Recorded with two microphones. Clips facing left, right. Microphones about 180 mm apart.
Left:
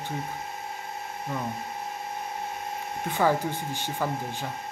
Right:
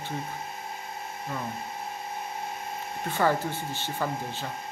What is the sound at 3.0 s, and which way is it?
Speech, 15° left (ahead or behind).